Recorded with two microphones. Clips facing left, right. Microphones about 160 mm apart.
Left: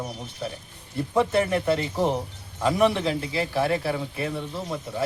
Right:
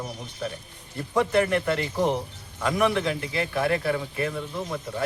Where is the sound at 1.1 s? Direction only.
25° left (ahead or behind).